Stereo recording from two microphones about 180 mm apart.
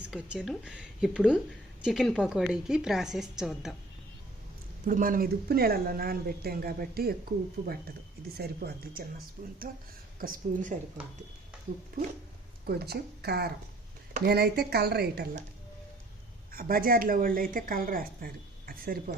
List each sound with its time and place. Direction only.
0.0 s a woman's voice: 5° right (ahead or behind)
4.9 s a woman's voice: 50° right (ahead or behind)
11.9 s a woman's voice: 50° right (ahead or behind)
12.6 s speech: 60° right (ahead or behind)
16.5 s a woman's voice: 55° right (ahead or behind)